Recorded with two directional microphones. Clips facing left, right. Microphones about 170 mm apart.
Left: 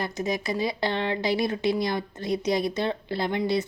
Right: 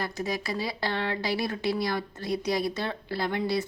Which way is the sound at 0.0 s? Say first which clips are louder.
Left 3 dB; 20° left (ahead or behind).